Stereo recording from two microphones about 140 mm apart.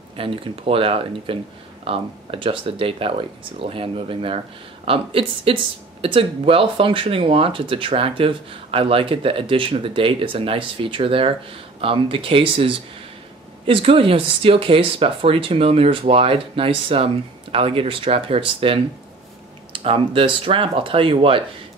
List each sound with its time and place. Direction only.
0.2 s speech: 40° right (ahead or behind)